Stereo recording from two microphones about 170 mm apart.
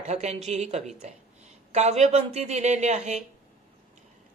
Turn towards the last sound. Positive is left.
turn(degrees=-40)  # may be behind; listen again after turning